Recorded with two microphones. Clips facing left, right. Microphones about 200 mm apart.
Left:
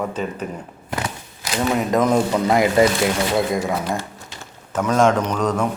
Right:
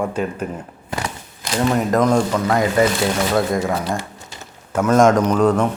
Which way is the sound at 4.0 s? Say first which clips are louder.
Even; 10° right (ahead or behind).